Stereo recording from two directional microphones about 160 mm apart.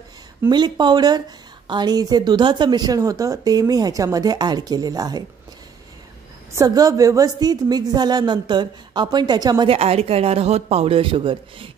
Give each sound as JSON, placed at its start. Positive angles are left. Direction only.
{"t": 0.5, "sound": "speech", "side_deg": -25}
{"t": 6.5, "sound": "speech", "side_deg": -20}
{"t": 9.8, "sound": "speech", "side_deg": -40}